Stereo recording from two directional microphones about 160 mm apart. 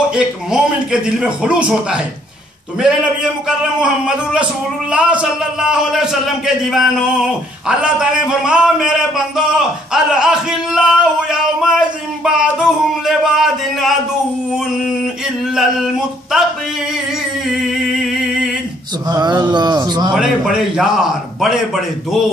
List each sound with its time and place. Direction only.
0.1 s a man's voice: 5° right (ahead or behind)
3.4 s a man's voice: 5° right (ahead or behind)
15.5 s a sound: centre (ahead or behind)
17.5 s a sound: centre (ahead or behind)
19.0 s speech: 25° right (ahead or behind)
20.2 s a man's voice: 5° right (ahead or behind)